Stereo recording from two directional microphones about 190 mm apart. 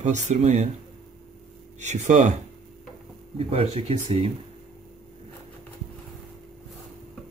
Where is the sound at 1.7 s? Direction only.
40° right (ahead or behind).